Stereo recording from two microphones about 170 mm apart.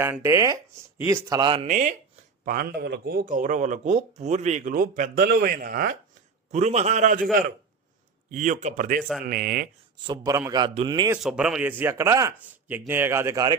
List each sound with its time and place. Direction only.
0.0 s a man's voice: 15° right (ahead or behind)
1.6 s speech: 50° right (ahead or behind)
6.5 s speech: 40° right (ahead or behind)
8.3 s speech: 45° right (ahead or behind)
10.1 s speech: 20° right (ahead or behind)
11.2 s a man's voice: 5° right (ahead or behind); by 13.6 s 20° right (ahead or behind)